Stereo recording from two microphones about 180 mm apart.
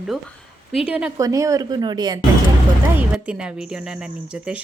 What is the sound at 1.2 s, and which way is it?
Speech, 20° right (ahead or behind).